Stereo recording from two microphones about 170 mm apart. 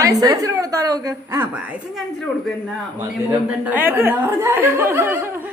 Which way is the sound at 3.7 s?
10° right (ahead or behind).